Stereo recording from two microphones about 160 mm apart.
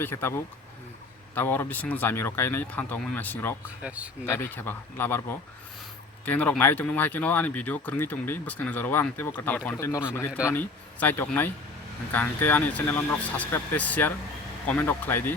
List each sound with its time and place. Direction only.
0.0 s speech: 15° left (ahead or behind)
3.8 s speech: 10° right (ahead or behind)
4.3 s a man's voice: 15° left (ahead or behind)